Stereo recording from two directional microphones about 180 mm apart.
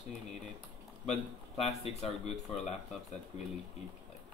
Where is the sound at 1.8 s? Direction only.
35° left (ahead or behind).